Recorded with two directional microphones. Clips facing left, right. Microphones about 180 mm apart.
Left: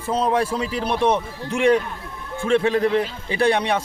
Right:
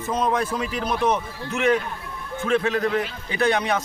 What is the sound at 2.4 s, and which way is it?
A man's voice, 30° left (ahead or behind).